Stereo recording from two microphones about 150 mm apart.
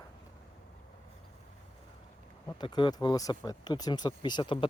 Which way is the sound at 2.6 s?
30° left (ahead or behind).